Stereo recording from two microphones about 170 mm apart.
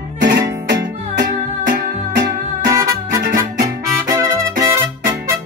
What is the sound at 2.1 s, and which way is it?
Music, 85° right.